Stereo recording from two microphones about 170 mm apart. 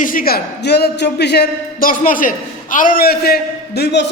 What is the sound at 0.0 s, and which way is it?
A man's voice, 55° left (ahead or behind).